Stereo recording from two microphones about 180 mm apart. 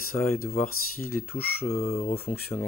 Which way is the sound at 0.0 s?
55° left (ahead or behind).